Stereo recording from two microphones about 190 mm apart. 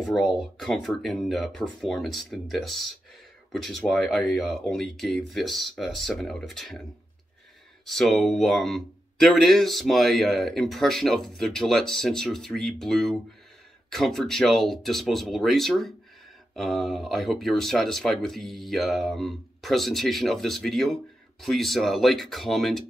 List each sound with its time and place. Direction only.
0.0 s speech: centre (ahead or behind)
7.8 s speech: centre (ahead or behind)